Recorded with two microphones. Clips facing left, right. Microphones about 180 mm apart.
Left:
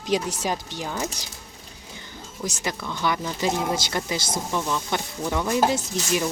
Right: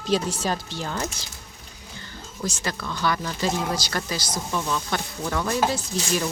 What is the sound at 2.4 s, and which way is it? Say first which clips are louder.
Speech: even; 20° left (ahead or behind).